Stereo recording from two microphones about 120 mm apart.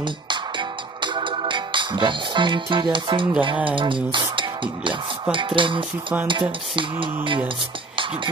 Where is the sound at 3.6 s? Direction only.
45° right (ahead or behind).